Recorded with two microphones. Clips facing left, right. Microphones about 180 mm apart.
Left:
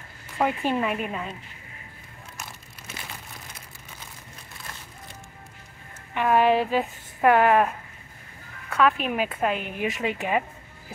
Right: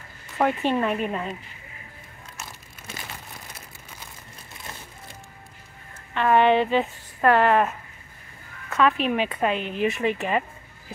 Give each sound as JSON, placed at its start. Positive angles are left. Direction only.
{"t": 0.4, "sound": "speech", "side_deg": 5}
{"t": 6.1, "sound": "speech", "side_deg": 5}
{"t": 8.7, "sound": "speech", "side_deg": 5}